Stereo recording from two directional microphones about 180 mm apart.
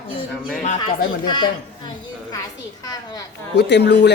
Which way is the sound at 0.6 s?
40° left (ahead or behind).